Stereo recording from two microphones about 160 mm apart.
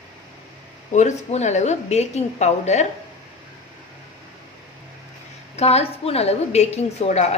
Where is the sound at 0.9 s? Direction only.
45° left (ahead or behind).